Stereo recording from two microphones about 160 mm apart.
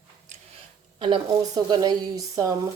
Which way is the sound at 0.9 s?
30° right (ahead or behind).